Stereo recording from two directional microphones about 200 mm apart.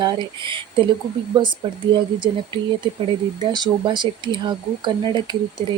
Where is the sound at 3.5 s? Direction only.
20° right (ahead or behind).